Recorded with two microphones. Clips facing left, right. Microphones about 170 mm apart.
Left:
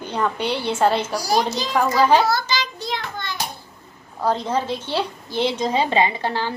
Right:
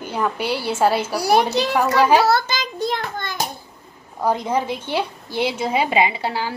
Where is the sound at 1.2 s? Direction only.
65° right (ahead or behind).